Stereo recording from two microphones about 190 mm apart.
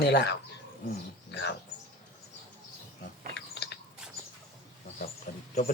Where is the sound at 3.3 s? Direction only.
65° left (ahead or behind).